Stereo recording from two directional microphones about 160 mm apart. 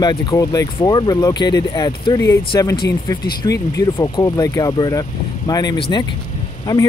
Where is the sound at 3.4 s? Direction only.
20° left (ahead or behind).